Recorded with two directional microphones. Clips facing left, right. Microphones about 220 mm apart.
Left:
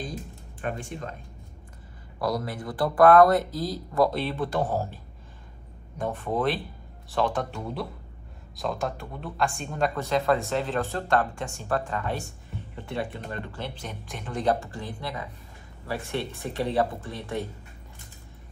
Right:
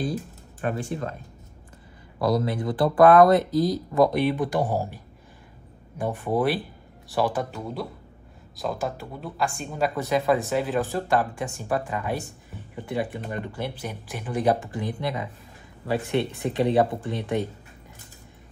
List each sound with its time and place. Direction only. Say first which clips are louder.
0.6 s speech: right 5 dB; 40° right (ahead or behind)
2.1 s speech: right 5 dB; 25° right (ahead or behind)
16.4 s speech: right 4 dB; 20° right (ahead or behind)